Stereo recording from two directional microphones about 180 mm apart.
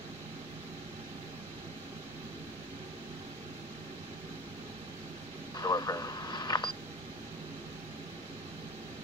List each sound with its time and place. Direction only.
5.6 s radio: 20° left (ahead or behind)